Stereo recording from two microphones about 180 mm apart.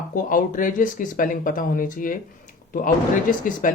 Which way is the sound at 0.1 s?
50° left (ahead or behind).